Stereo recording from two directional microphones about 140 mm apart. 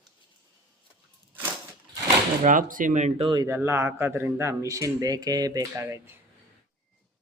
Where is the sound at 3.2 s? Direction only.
35° right (ahead or behind).